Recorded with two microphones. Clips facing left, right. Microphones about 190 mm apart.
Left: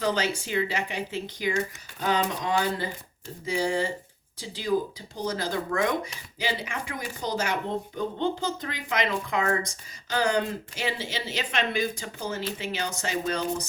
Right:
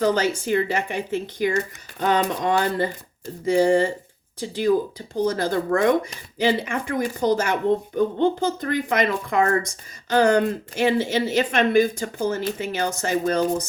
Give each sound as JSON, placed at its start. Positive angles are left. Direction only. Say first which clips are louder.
{"t": 0.0, "sound": "a woman's voice", "louder": "right 6 dB", "side_deg": -45}